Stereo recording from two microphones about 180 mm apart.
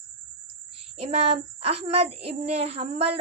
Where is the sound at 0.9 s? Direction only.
35° right (ahead or behind).